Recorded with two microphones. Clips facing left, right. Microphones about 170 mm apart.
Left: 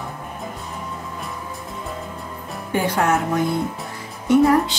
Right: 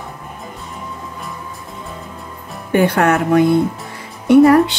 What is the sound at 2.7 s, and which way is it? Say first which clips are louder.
A woman's voice: right 6 dB; 65° right (ahead or behind).